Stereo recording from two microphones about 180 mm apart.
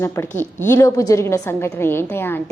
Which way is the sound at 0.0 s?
15° left (ahead or behind).